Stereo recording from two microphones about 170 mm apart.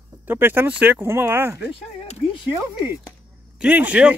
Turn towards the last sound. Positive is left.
turn(degrees=-10)  # may be behind; listen again after turning